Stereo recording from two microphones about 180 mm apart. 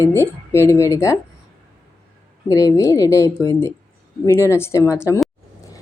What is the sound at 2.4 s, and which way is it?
A woman's voice, 20° left (ahead or behind).